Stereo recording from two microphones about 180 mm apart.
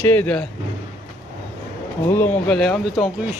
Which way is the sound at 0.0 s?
10° left (ahead or behind).